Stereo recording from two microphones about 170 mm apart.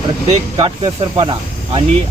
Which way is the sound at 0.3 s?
35° right (ahead or behind).